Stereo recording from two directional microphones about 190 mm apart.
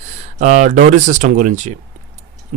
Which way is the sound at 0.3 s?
40° right (ahead or behind).